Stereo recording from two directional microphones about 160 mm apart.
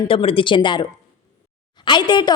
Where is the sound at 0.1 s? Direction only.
35° left (ahead or behind).